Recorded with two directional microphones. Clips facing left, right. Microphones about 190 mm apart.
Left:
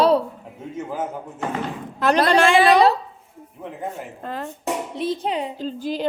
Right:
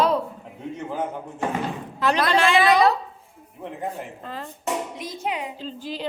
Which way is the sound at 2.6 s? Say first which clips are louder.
Left 3 dB; 30° left (ahead or behind).